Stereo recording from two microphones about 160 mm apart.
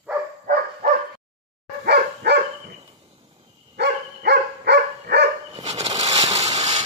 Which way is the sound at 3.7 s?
90° right.